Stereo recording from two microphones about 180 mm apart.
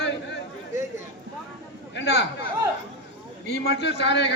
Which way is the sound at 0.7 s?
15° right (ahead or behind).